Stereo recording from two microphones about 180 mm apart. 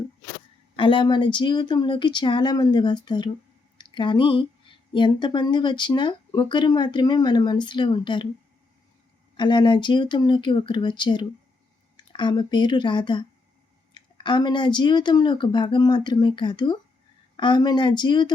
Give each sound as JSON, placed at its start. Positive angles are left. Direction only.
{"t": 0.8, "sound": "a woman's voice", "side_deg": 30}
{"t": 9.4, "sound": "a woman's voice", "side_deg": 25}